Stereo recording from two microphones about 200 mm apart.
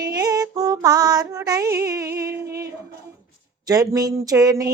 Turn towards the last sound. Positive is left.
turn(degrees=-20)  # may be behind; listen again after turning